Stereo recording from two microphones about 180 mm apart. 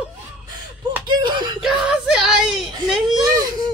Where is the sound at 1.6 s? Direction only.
5° right (ahead or behind).